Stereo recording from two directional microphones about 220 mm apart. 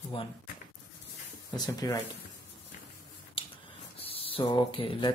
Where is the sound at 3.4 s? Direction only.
25° left (ahead or behind).